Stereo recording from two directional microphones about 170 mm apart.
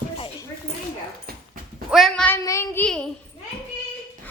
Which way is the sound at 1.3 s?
65° right (ahead or behind).